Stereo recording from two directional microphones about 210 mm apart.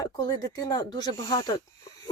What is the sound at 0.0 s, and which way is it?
Speech, 20° left (ahead or behind).